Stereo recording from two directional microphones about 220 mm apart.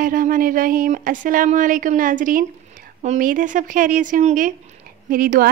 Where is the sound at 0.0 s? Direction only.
40° right (ahead or behind).